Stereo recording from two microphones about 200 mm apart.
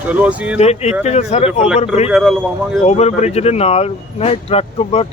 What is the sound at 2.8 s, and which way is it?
Speech, 35° left (ahead or behind).